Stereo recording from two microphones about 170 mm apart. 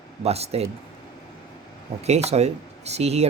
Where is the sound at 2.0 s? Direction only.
40° right (ahead or behind).